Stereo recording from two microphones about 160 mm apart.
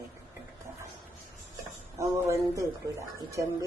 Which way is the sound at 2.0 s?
15° right (ahead or behind).